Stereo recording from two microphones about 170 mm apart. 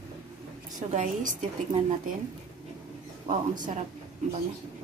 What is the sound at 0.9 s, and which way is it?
Speech, 45° right (ahead or behind).